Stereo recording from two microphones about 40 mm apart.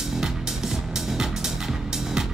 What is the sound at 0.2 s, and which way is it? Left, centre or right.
Music, centre.